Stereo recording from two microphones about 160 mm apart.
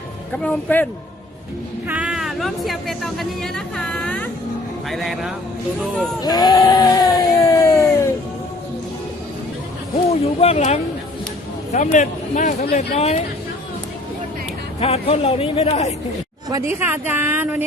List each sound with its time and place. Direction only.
0.4 s speech: 10° left (ahead or behind)
1.9 s speech: 5° right (ahead or behind)
6.2 s a sound: 25° left (ahead or behind)
10.4 s speech: 45° left (ahead or behind)
14.8 s speech: 40° left (ahead or behind)
16.5 s a woman's voice: 20° right (ahead or behind)